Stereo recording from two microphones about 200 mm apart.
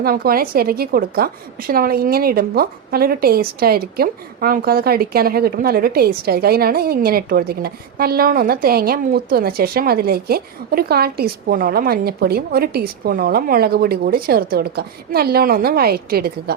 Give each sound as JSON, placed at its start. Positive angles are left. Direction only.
{"t": 0.0, "sound": "a woman's voice", "side_deg": -50}